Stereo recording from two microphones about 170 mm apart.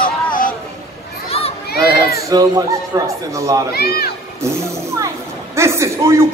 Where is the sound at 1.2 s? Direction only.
35° left (ahead or behind).